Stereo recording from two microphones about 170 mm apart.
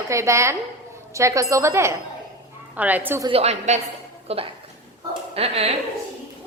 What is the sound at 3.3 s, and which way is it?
A woman's voice, 35° right (ahead or behind).